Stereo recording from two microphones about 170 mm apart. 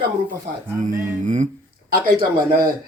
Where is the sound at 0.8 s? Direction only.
50° right (ahead or behind).